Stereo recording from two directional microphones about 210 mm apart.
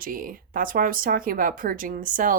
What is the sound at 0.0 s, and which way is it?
Speech, 40° right (ahead or behind).